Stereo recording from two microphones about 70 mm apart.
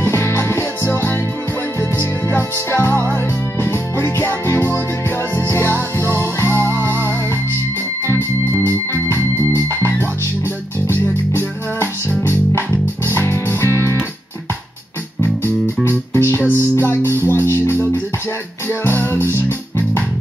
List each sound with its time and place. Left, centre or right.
0.0 s music: left
8.5 s music: right
8.9 s music: left
11.3 s music: left
16.1 s music: left
17.0 s music: right
17.3 s music: left